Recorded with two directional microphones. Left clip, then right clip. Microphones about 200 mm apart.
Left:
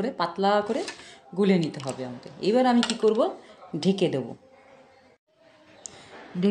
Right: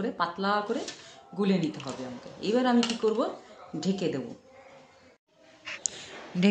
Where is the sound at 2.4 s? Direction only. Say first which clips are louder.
Left 4 dB; 45° left (ahead or behind).